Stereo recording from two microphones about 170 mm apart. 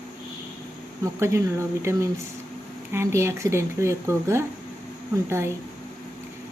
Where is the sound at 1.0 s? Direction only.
15° right (ahead or behind).